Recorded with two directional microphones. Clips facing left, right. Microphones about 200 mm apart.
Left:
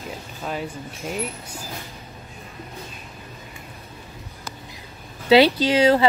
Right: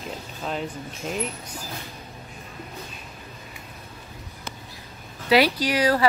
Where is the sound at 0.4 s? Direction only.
5° left (ahead or behind).